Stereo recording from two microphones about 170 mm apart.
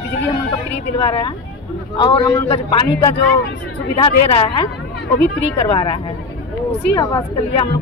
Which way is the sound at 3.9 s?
35° left (ahead or behind).